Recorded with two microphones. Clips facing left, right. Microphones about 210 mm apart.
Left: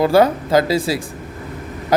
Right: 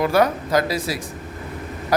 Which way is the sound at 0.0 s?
30° left (ahead or behind).